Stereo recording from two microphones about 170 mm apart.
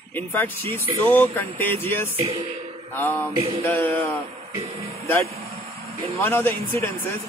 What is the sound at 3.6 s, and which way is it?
Speech, 10° left (ahead or behind).